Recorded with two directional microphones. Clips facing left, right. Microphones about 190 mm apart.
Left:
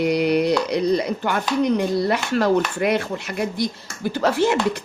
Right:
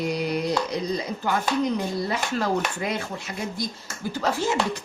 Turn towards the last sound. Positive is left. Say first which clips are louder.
# left 5 dB
turn(degrees=65)  # may be behind; listen again after turning